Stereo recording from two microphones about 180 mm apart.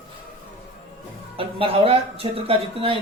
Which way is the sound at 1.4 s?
30° right (ahead or behind).